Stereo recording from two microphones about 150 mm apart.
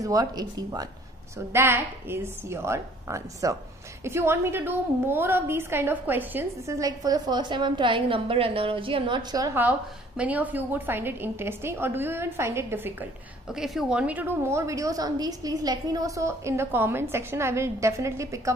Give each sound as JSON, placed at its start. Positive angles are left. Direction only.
{"t": 0.0, "sound": "a woman's voice", "side_deg": -25}
{"t": 1.5, "sound": "a woman's voice", "side_deg": -15}
{"t": 9.5, "sound": "a woman's voice", "side_deg": -10}